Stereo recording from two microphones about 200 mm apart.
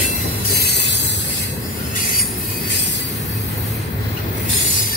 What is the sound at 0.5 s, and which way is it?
Mechanisms, 55° left (ahead or behind).